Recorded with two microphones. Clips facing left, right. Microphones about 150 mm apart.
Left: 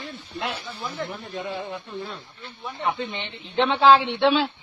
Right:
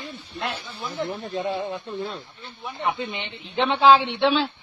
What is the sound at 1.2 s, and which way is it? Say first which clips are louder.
Speech: right 4 dB; 25° right (ahead or behind).